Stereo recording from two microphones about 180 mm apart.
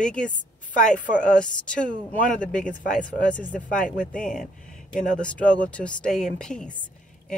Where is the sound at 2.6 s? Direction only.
45° left (ahead or behind).